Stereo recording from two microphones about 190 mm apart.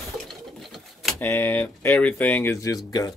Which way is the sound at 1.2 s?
10° left (ahead or behind).